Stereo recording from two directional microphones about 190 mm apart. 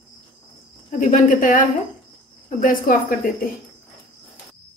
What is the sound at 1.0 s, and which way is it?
Speech, 45° left (ahead or behind).